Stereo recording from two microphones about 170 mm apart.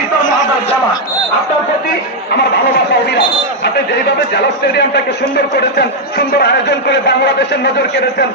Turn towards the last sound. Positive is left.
turn(degrees=85)